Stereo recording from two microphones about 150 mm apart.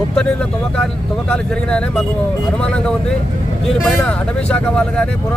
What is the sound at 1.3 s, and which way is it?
Speech, 5° left (ahead or behind).